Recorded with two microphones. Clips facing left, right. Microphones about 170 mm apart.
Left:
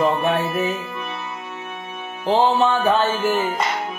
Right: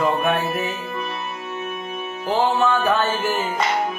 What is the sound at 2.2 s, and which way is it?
Music, 30° left (ahead or behind).